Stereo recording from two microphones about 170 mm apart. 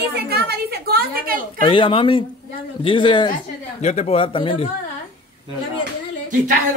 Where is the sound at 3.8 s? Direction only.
40° left (ahead or behind).